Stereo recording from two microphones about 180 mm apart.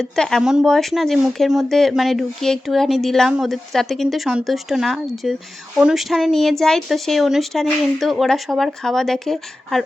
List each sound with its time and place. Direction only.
0.0 s speech: 5° left (ahead or behind)